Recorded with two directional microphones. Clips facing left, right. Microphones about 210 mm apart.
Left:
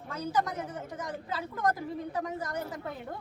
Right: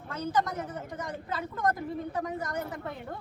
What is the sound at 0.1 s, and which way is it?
A woman's voice, 10° left (ahead or behind).